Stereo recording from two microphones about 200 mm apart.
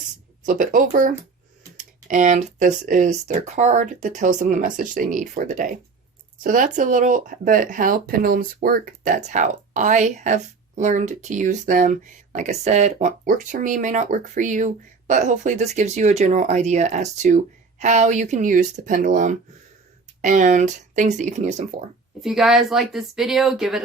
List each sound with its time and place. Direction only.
0.4 s speech: 40° right (ahead or behind)
22.2 s speech: centre (ahead or behind)